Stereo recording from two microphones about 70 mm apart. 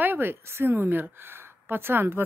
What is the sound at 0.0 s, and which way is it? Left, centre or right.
Speech, right.